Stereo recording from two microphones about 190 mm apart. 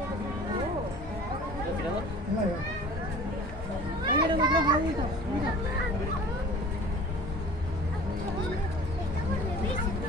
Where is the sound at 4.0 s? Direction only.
20° right (ahead or behind).